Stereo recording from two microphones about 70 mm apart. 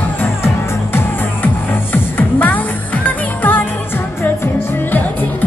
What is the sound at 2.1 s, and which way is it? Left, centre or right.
Music, left.